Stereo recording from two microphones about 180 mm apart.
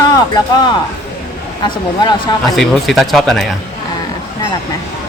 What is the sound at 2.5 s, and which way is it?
Speech, centre (ahead or behind).